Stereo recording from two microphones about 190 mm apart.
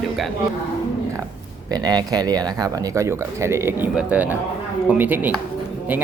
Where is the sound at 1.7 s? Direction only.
20° right (ahead or behind).